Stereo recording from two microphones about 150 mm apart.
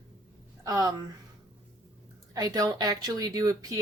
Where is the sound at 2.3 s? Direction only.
25° right (ahead or behind).